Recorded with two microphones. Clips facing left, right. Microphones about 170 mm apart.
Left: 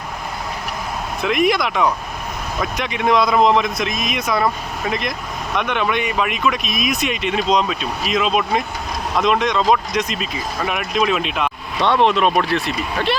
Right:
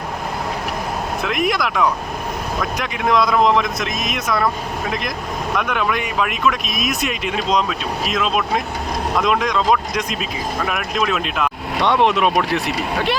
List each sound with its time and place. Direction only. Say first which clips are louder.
1.2 s speech: left 4 dB; centre (ahead or behind)
6.7 s speech: left 1 dB; 50° right (ahead or behind)
7.1 s speech: left 3 dB; 5° right (ahead or behind)
11.8 s speech: left 1 dB; 15° right (ahead or behind)